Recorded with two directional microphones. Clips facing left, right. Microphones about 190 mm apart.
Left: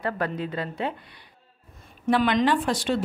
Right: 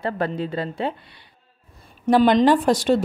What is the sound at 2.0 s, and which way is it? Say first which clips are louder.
Speech: right 6 dB; 40° right (ahead or behind).